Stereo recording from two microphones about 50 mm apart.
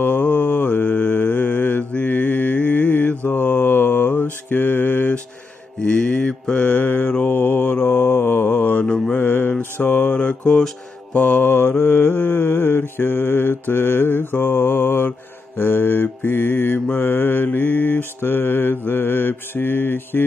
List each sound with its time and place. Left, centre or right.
0.0 s mantra: left
5.9 s mantra: left
10.1 s a sound: left
11.1 s mantra: left